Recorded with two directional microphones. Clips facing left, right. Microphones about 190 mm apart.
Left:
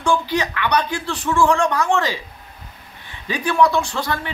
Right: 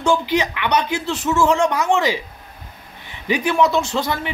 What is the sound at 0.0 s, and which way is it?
A man's voice, 20° right (ahead or behind).